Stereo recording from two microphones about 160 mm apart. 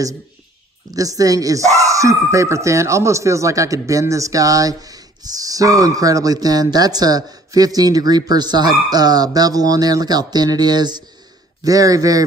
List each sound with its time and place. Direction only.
0.9 s speech: 20° right (ahead or behind)